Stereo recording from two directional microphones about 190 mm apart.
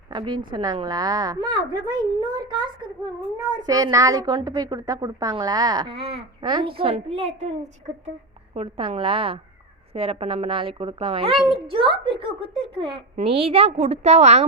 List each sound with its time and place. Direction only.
0.1 s a woman's voice: 25° right (ahead or behind)
8.5 s a woman's voice: 30° right (ahead or behind)